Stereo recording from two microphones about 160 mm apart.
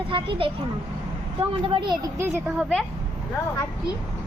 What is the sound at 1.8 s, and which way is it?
Speech, 30° right (ahead or behind).